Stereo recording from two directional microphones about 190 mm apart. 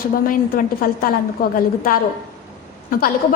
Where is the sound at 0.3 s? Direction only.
50° left (ahead or behind).